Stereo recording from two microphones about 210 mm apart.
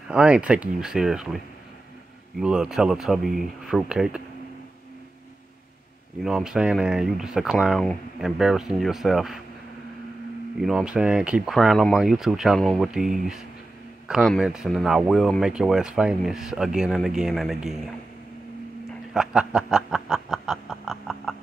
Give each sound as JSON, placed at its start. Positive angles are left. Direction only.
{"t": 0.1, "sound": "speech", "side_deg": -5}
{"t": 6.2, "sound": "speech", "side_deg": 0}
{"t": 10.6, "sound": "speech", "side_deg": 0}
{"t": 19.1, "sound": "snicker", "side_deg": -5}